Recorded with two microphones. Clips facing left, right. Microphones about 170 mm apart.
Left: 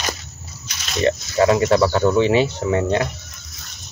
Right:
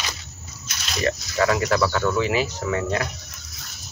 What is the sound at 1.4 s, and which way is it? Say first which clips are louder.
Speech: left 5 dB; 25° left (ahead or behind).